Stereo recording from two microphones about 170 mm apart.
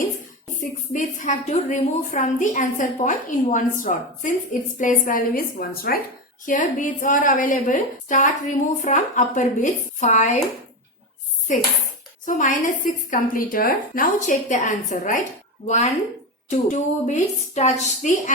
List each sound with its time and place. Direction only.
0.9 s a woman's voice: 45° left (ahead or behind)
6.4 s a woman's voice: 50° left (ahead or behind)
12.2 s a woman's voice: 50° left (ahead or behind)